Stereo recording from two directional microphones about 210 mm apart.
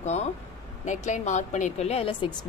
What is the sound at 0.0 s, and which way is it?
A woman's voice, 30° left (ahead or behind).